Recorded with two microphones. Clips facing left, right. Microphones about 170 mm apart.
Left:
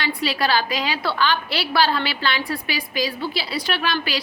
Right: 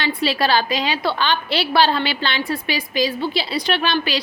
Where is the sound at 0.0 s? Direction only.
25° right (ahead or behind).